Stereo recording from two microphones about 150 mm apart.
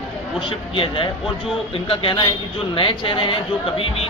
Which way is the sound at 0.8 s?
35° left (ahead or behind).